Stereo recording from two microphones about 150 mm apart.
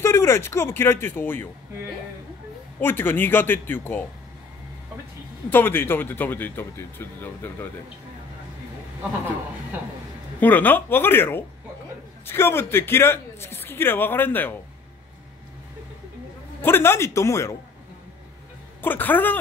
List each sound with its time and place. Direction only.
0.0 s a man's voice: 15° left (ahead or behind)
2.8 s a man's voice: 15° left (ahead or behind)
5.5 s a man's voice: 15° left (ahead or behind)
10.4 s a man's voice: 10° left (ahead or behind)
16.6 s a man's voice: 15° left (ahead or behind)
18.8 s a man's voice: 10° left (ahead or behind)